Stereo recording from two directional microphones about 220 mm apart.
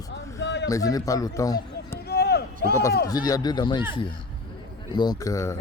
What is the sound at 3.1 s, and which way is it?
Speech, 15° left (ahead or behind).